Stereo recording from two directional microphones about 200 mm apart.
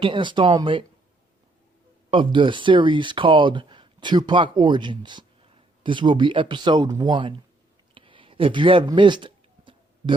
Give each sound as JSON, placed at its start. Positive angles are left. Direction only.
{"t": 0.0, "sound": "speech", "side_deg": -25}
{"t": 2.0, "sound": "speech", "side_deg": -25}
{"t": 7.9, "sound": "a sound", "side_deg": -25}